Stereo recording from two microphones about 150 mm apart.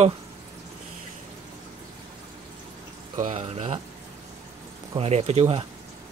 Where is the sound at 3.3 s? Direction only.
40° right (ahead or behind).